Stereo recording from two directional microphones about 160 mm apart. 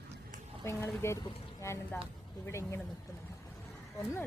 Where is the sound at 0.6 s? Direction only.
15° left (ahead or behind).